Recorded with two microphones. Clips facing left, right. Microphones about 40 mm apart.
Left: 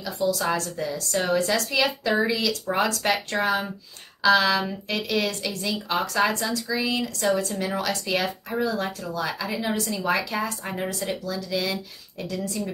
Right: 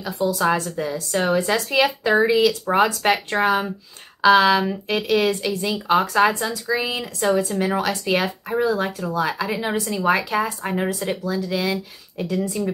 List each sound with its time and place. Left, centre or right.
0.3 s speech: centre